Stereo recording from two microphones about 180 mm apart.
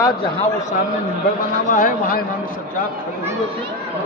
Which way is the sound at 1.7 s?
50° left (ahead or behind).